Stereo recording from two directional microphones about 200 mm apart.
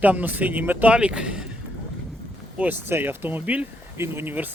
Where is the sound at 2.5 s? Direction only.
10° right (ahead or behind).